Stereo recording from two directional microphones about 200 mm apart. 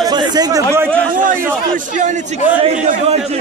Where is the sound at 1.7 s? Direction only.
40° right (ahead or behind).